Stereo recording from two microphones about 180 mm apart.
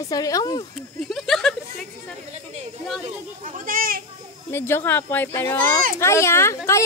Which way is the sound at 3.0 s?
45° right (ahead or behind).